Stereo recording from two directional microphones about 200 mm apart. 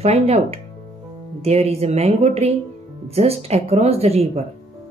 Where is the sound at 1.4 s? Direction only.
30° right (ahead or behind).